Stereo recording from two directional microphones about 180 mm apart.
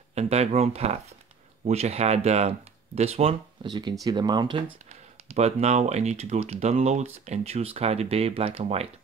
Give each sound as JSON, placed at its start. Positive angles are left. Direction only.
{"t": 0.1, "sound": "speech", "side_deg": -35}
{"t": 5.3, "sound": "speech", "side_deg": -35}